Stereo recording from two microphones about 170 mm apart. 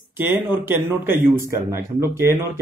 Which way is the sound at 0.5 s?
10° right (ahead or behind).